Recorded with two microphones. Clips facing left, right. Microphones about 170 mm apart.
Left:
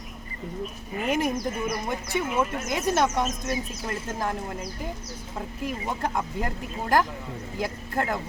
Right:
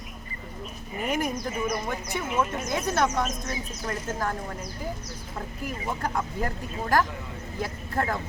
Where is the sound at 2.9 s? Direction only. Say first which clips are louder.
Left 2 dB; 20° left (ahead or behind).